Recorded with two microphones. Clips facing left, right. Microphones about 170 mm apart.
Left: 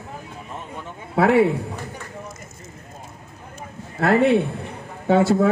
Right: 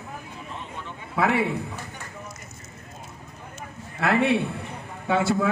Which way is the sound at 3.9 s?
45° left (ahead or behind).